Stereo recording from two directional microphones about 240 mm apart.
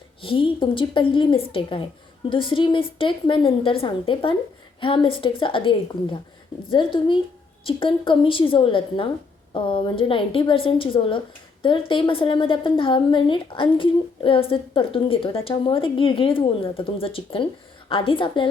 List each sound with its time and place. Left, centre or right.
0.2 s a woman's voice: left